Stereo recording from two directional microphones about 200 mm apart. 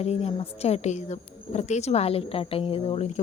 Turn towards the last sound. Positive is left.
turn(degrees=30)  # may be behind; listen again after turning